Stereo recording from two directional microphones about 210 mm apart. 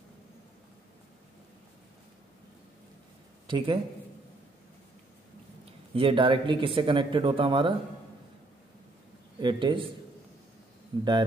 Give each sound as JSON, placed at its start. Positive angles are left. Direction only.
{"t": 3.4, "sound": "speech", "side_deg": -25}
{"t": 5.9, "sound": "speech", "side_deg": -25}
{"t": 9.4, "sound": "speech", "side_deg": -20}
{"t": 10.9, "sound": "speech", "side_deg": -20}